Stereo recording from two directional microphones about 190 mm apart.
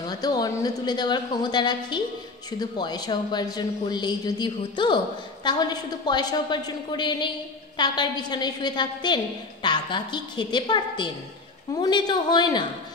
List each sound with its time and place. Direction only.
0.0 s a woman's voice: 20° left (ahead or behind)